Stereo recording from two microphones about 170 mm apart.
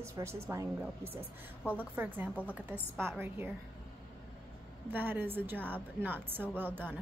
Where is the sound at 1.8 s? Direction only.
10° right (ahead or behind).